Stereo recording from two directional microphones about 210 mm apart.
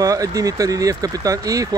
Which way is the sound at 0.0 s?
15° right (ahead or behind).